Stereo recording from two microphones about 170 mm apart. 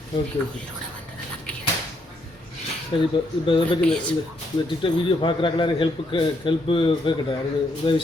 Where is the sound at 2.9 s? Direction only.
30° left (ahead or behind).